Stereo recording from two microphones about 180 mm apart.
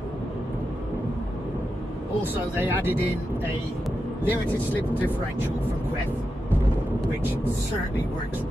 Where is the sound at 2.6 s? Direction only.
10° right (ahead or behind).